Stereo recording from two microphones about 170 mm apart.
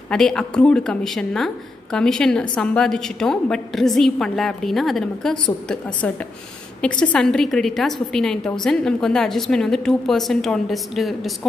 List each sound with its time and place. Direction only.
0.1 s a woman's voice: 5° left (ahead or behind)